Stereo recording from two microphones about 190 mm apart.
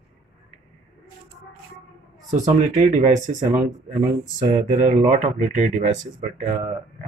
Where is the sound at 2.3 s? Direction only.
35° right (ahead or behind).